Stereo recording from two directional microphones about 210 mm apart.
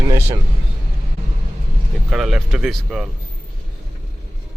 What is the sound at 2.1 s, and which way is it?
Speech, centre (ahead or behind).